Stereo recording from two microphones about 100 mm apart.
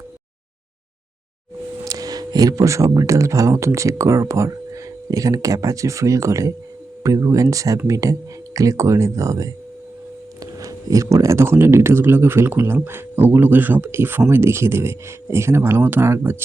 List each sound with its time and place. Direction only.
1.8 s speech: 35° right (ahead or behind)